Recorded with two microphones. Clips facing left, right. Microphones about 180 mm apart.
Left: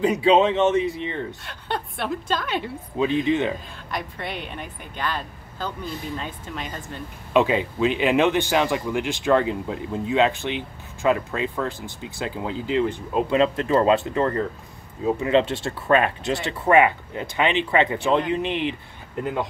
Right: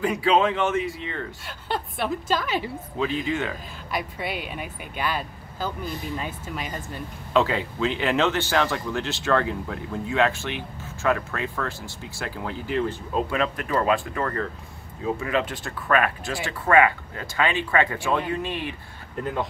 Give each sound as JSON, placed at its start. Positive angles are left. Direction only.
{"t": 0.0, "sound": "speech", "side_deg": 20}
{"t": 1.4, "sound": "a woman's voice", "side_deg": -5}
{"t": 3.0, "sound": "speech", "side_deg": 20}
{"t": 3.9, "sound": "speech", "side_deg": -5}
{"t": 7.3, "sound": "speech", "side_deg": 15}